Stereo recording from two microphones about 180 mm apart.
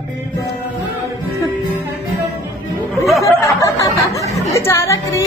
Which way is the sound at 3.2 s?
15° left (ahead or behind).